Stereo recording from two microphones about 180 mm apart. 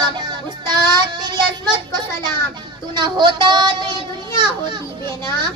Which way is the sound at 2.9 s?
25° right (ahead or behind).